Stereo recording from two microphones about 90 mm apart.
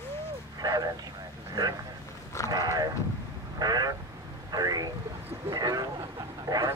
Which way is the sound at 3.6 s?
50° right (ahead or behind).